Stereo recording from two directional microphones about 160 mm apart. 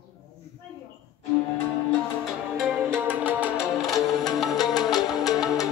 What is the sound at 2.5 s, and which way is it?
Music, centre (ahead or behind).